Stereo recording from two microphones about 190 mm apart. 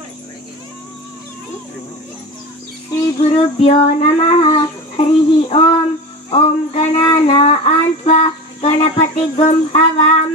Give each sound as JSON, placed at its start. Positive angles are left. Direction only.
{"t": 3.2, "sound": "child singing", "side_deg": 35}
{"t": 6.3, "sound": "female singing", "side_deg": 30}